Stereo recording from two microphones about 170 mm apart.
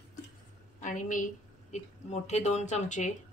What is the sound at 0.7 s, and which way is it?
A woman's voice, 50° left (ahead or behind).